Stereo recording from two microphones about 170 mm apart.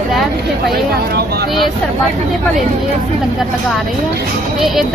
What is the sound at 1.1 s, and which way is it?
Speech, 70° right (ahead or behind).